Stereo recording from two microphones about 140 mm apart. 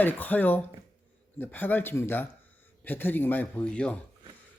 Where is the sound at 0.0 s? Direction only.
10° left (ahead or behind).